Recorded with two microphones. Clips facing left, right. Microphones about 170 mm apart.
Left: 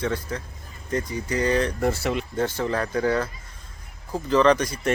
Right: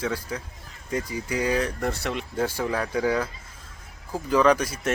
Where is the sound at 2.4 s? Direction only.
10° right (ahead or behind).